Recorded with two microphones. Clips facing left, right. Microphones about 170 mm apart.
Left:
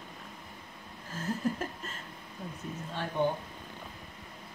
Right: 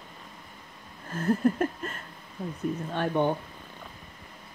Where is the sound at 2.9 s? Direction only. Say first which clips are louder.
Right 4 dB; 60° right (ahead or behind).